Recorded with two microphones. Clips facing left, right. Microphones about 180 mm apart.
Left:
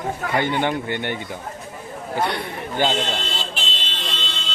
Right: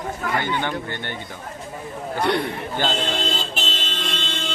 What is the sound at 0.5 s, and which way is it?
Speech, 15° left (ahead or behind).